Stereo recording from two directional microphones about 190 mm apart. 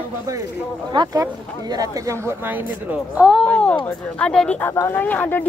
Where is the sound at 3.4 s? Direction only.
5° left (ahead or behind).